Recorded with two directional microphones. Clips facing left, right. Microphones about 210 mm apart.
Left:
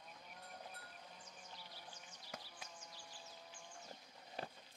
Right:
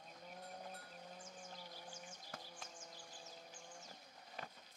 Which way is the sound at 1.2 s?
50° right (ahead or behind).